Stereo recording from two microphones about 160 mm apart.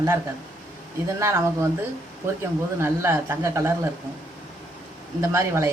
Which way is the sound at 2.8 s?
15° right (ahead or behind).